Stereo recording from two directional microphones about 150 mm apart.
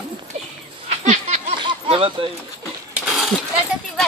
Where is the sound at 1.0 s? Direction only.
45° right (ahead or behind).